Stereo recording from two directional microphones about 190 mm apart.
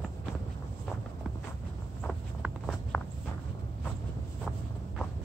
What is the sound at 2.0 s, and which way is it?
Walk, 5° left (ahead or behind).